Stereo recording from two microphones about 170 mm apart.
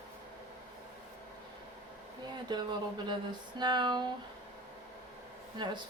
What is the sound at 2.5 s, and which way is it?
Speech, 25° right (ahead or behind).